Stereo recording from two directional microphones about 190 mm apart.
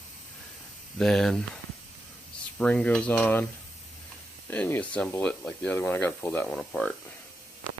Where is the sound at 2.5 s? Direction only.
5° left (ahead or behind).